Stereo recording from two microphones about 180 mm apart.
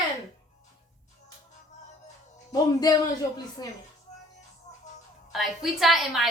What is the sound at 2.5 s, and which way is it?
A man's voice, 20° left (ahead or behind).